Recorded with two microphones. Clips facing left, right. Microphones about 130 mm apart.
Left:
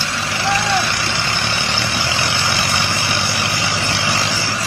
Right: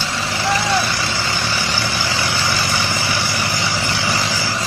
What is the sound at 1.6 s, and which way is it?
Vehicle, 70° left (ahead or behind).